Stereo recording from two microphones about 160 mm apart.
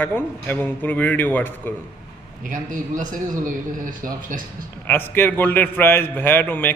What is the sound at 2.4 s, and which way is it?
A man's voice, 55° right (ahead or behind).